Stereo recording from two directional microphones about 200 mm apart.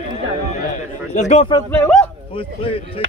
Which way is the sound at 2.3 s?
25° left (ahead or behind).